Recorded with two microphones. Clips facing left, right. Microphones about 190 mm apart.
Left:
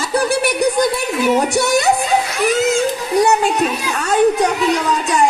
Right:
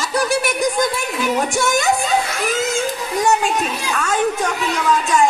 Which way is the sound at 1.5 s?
40° left (ahead or behind).